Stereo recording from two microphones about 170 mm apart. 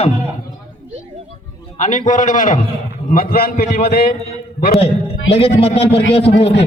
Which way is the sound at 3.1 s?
60° left (ahead or behind).